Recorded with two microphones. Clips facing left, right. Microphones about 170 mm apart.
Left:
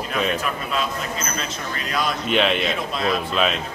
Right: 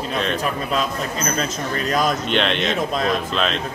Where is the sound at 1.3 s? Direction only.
45° right (ahead or behind).